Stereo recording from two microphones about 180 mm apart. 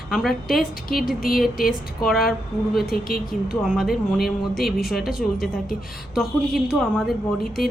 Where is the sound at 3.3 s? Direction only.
5° right (ahead or behind).